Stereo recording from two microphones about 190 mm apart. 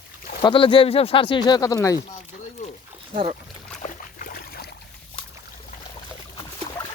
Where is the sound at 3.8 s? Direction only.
45° left (ahead or behind).